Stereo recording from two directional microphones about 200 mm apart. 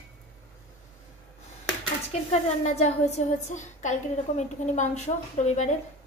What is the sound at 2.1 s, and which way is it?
A woman's voice, 35° left (ahead or behind).